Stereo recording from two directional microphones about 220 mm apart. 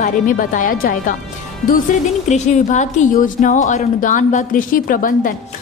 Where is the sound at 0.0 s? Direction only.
35° left (ahead or behind).